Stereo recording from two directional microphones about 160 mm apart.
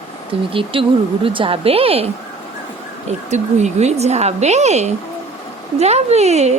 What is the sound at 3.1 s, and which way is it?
A woman's voice, 45° right (ahead or behind).